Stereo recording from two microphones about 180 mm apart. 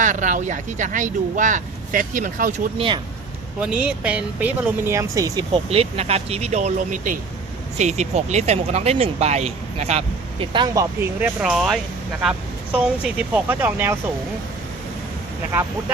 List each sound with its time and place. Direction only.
0.0 s speech: 45° right (ahead or behind)
2.7 s speech: 30° right (ahead or behind)
3.6 s speech: 5° right (ahead or behind); by 10.8 s 25° right (ahead or behind)
11.2 s speech: 5° right (ahead or behind)
15.5 s speech: 10° right (ahead or behind)